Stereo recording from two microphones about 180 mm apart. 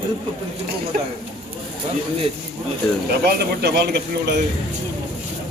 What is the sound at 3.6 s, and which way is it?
Speech, 65° right (ahead or behind).